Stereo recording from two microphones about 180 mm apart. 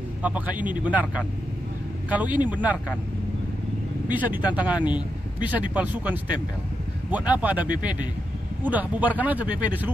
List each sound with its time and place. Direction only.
0.2 s speech: 10° right (ahead or behind)
2.0 s speech: 10° right (ahead or behind)
4.1 s speech: 10° right (ahead or behind)